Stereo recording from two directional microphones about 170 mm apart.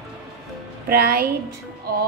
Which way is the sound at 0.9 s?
65° right (ahead or behind).